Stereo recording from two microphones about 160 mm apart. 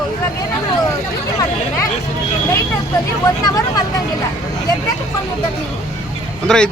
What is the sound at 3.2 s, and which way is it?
Speech, 25° left (ahead or behind).